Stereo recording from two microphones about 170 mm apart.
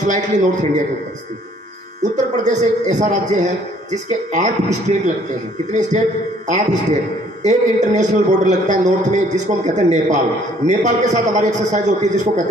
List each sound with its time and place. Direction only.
0.0 s a man's voice: 45° right (ahead or behind)
2.1 s a man's voice: 45° right (ahead or behind)